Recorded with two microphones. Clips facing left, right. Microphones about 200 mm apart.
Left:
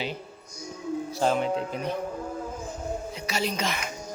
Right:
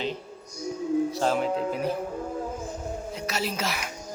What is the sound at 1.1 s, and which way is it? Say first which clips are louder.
Speech: even; centre (ahead or behind).